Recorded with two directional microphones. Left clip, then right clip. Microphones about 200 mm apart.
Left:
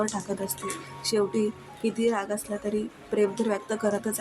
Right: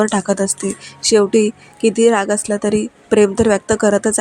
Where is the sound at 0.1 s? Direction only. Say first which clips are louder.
Right 14 dB; 35° right (ahead or behind).